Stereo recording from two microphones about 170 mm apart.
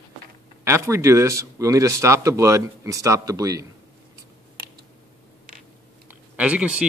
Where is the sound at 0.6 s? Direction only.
15° right (ahead or behind).